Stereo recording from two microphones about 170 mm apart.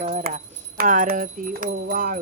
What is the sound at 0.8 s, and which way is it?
Speech, 55° right (ahead or behind).